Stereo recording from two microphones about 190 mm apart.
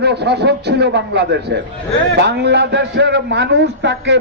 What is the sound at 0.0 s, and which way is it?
A man's voice, 60° right (ahead or behind).